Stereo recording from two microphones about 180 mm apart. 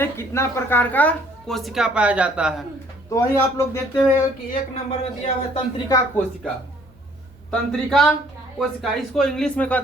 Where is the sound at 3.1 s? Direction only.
15° left (ahead or behind).